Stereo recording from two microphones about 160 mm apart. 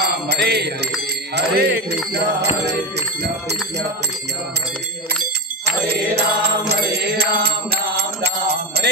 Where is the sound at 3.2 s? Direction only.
90° right.